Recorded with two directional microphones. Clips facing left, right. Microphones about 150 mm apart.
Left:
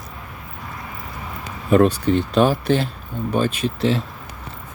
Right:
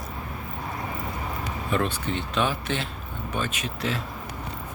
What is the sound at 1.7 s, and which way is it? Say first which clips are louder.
Speech: left 12 dB; 40° left (ahead or behind).